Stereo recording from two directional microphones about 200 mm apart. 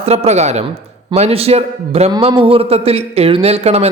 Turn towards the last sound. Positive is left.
turn(degrees=-30)  # may be behind; listen again after turning